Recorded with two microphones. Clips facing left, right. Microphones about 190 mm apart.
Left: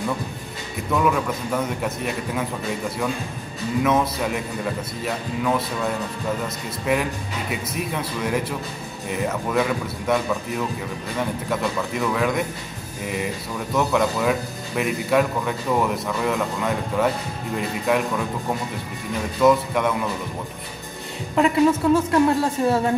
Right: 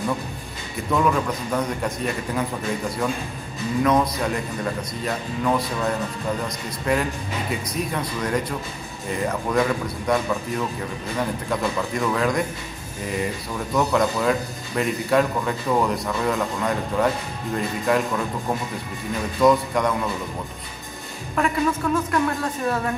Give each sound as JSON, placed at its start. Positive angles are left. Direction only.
{"t": 0.9, "sound": "a man's voice", "side_deg": 5}
{"t": 3.8, "sound": "a man's voice", "side_deg": 5}
{"t": 11.1, "sound": "a man's voice", "side_deg": 5}
{"t": 19.4, "sound": "a man's voice", "side_deg": 5}
{"t": 21.4, "sound": "a woman's voice", "side_deg": 25}